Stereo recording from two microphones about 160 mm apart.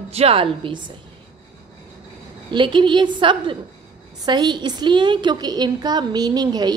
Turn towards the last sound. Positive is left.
turn(degrees=-25)  # may be behind; listen again after turning